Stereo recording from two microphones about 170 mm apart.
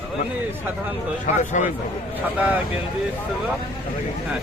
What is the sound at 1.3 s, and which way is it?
Speech, 45° left (ahead or behind).